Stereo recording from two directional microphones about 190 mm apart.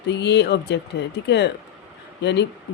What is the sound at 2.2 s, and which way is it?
Speech, 65° left (ahead or behind).